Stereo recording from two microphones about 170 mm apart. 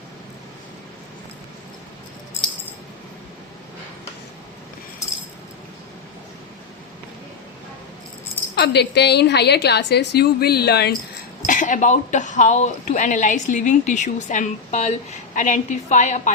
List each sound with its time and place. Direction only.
8.5 s a woman's voice: 75° left (ahead or behind)
11.4 s speech: 50° left (ahead or behind)